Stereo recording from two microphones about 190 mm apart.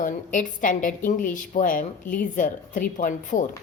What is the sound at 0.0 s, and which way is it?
A woman's voice, 45° left (ahead or behind).